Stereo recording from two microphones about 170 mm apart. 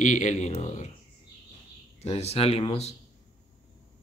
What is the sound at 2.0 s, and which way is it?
Speech, 35° left (ahead or behind).